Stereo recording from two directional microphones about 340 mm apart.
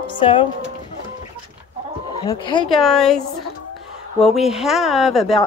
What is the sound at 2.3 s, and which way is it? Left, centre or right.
Speech, centre.